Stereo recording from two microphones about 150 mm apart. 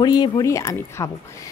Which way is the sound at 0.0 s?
30° left (ahead or behind).